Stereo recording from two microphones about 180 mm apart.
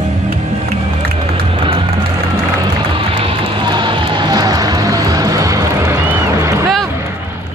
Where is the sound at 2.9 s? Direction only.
30° right (ahead or behind); by 6.6 s 15° right (ahead or behind).